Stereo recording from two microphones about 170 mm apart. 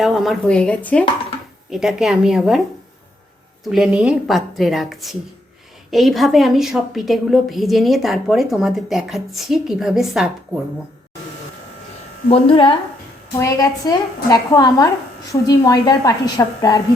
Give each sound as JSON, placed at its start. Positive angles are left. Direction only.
{"t": 0.0, "sound": "a woman's voice", "side_deg": 0}
{"t": 1.7, "sound": "a woman's voice", "side_deg": 0}
{"t": 3.6, "sound": "a woman's voice", "side_deg": 0}
{"t": 12.3, "sound": "a woman's voice", "side_deg": 30}